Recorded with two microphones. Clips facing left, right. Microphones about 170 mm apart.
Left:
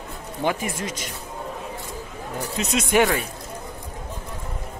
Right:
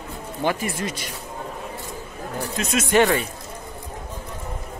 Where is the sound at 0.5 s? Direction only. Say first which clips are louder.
Right 1 dB; 15° left (ahead or behind).